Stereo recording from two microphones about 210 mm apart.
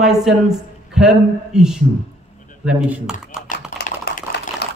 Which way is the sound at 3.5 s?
45° left (ahead or behind).